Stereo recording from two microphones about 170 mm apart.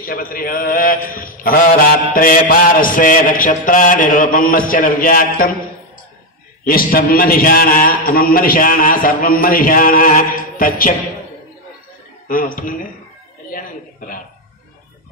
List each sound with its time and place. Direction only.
0.0 s a man's voice: 55° left (ahead or behind)
6.6 s a man's voice: 60° left (ahead or behind)
12.3 s a man's voice: 55° left (ahead or behind)
13.5 s a sound: 55° left (ahead or behind)